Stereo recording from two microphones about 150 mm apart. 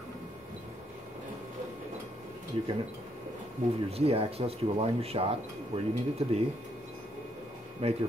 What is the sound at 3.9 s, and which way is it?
Speech, 40° right (ahead or behind).